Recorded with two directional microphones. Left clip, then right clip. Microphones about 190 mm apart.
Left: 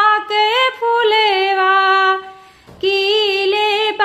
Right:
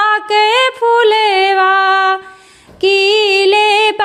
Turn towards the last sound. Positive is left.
turn(degrees=-30)  # may be behind; listen again after turning